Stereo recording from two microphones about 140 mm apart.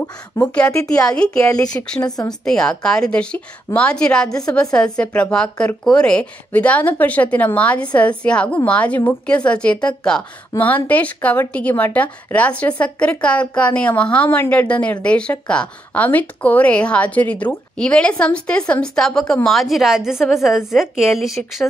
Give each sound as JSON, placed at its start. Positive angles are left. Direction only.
{"t": 0.3, "sound": "speech", "side_deg": 20}
{"t": 1.0, "sound": "a woman's voice", "side_deg": 5}
{"t": 1.4, "sound": "speech", "side_deg": 25}
{"t": 1.7, "sound": "speech", "side_deg": 10}
{"t": 2.0, "sound": "speech", "side_deg": 25}
{"t": 2.4, "sound": "a woman's voice", "side_deg": 5}